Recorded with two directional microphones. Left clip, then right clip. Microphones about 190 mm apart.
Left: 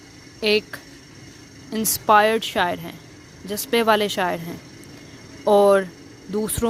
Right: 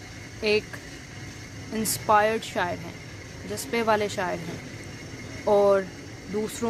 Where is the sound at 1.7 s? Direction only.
40° left (ahead or behind).